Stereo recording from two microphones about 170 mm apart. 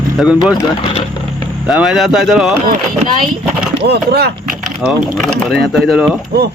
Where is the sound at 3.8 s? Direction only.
75° right (ahead or behind).